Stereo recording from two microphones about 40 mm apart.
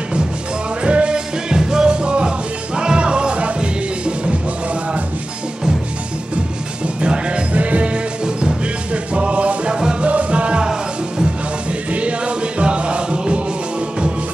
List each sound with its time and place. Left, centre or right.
0.8 s music: right
7.0 s music: right
11.9 s music: right